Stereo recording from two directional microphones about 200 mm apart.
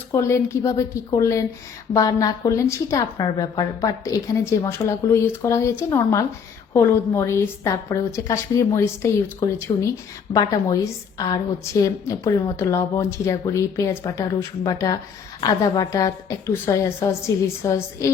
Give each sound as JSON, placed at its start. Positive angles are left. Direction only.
{"t": 0.1, "sound": "a woman's voice", "side_deg": 15}